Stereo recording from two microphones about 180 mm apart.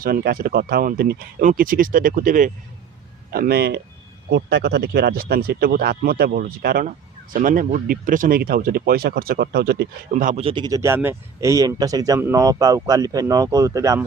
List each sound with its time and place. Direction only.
0.0 s speech: 60° right (ahead or behind)
3.3 s speech: 60° right (ahead or behind)
10.2 s speech: 45° right (ahead or behind)
10.4 s speech: 25° right (ahead or behind)